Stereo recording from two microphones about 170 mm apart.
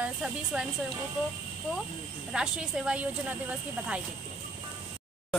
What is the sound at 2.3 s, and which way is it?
Speech, 5° right (ahead or behind).